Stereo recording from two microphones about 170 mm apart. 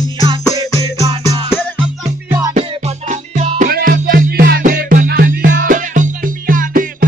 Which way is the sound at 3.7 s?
60° right (ahead or behind).